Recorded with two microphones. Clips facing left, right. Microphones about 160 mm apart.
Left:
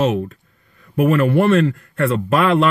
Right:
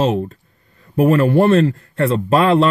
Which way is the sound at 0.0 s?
30° right (ahead or behind).